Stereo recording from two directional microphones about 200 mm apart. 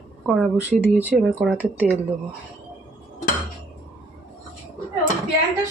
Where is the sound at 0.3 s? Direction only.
5° right (ahead or behind).